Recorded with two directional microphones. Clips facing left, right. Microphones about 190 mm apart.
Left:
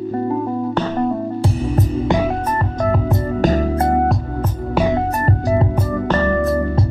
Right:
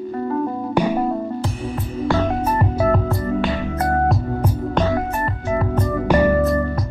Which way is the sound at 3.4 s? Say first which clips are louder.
Left 6 dB; 40° left (ahead or behind).